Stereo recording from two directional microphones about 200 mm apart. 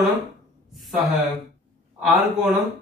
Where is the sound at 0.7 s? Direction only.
Centre (ahead or behind).